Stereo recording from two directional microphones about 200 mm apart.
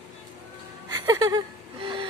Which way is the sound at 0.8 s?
20° right (ahead or behind).